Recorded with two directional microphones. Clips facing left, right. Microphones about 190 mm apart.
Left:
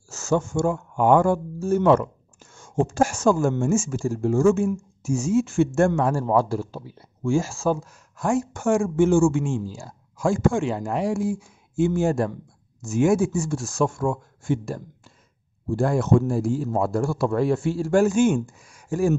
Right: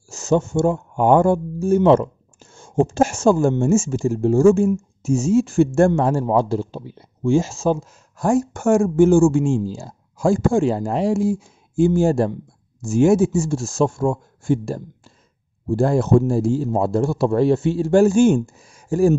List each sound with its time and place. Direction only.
0.1 s a man's voice: 20° right (ahead or behind)
8.2 s a man's voice: 40° right (ahead or behind)